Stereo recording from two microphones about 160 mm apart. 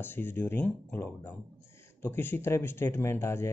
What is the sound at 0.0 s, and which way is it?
Speech, 15° left (ahead or behind).